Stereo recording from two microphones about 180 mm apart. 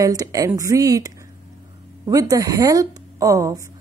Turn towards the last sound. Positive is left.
turn(degrees=-20)  # may be behind; listen again after turning